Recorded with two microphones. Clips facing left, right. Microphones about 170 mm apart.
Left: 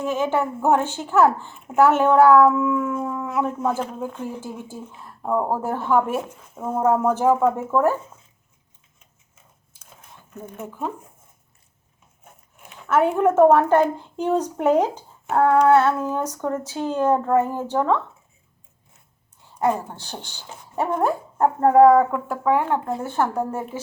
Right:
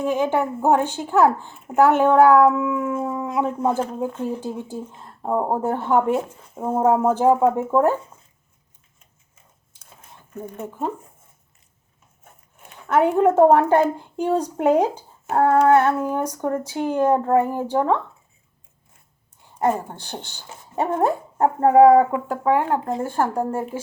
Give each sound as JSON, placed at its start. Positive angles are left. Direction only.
{"t": 0.0, "sound": "speech", "side_deg": -15}
{"t": 10.4, "sound": "speech", "side_deg": -10}
{"t": 12.9, "sound": "speech", "side_deg": -15}
{"t": 19.7, "sound": "speech", "side_deg": -15}
{"t": 20.2, "sound": "speech", "side_deg": 15}
{"t": 20.7, "sound": "speech", "side_deg": -20}